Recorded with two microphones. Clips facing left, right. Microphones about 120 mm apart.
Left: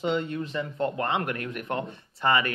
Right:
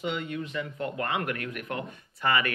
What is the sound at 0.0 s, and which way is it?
Speech, 30° left (ahead or behind).